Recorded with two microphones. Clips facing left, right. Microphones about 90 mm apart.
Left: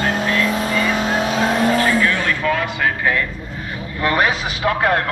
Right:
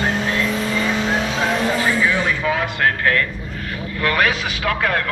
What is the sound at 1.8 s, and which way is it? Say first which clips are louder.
Vehicle: left 1 dB; 15° right (ahead or behind).